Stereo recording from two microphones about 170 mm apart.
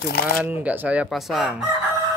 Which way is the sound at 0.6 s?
10° right (ahead or behind).